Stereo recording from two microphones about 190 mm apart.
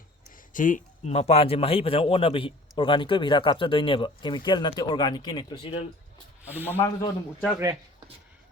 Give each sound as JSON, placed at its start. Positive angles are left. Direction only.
{"t": 0.5, "sound": "a man's voice", "side_deg": 45}
{"t": 6.4, "sound": "speech", "side_deg": -10}
{"t": 6.7, "sound": "speech", "side_deg": 15}